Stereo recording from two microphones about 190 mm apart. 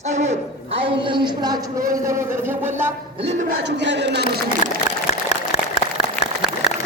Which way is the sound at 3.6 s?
65° right (ahead or behind).